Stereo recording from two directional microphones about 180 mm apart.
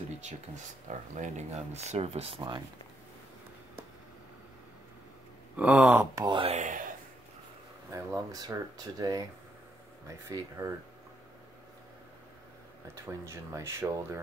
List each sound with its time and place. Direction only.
0.8 s speech: 40° right (ahead or behind)
5.6 s speech: 5° right (ahead or behind)
6.2 s speech: 30° right (ahead or behind)
6.6 s a sound: 45° right (ahead or behind)
7.9 s speech: 20° right (ahead or behind)
12.9 s speech: 15° right (ahead or behind)